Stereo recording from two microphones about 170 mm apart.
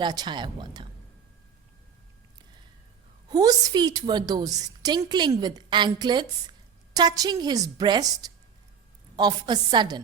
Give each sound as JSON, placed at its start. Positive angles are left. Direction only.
{"t": 0.0, "sound": "a woman's voice", "side_deg": -25}
{"t": 3.2, "sound": "a woman's voice", "side_deg": -20}